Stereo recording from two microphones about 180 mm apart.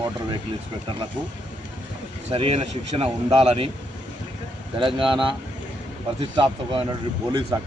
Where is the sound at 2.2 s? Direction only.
30° right (ahead or behind).